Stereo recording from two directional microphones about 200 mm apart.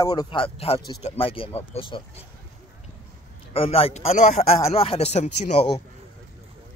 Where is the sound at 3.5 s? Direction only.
30° left (ahead or behind).